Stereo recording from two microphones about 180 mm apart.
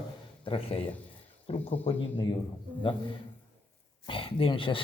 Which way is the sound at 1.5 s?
30° left (ahead or behind).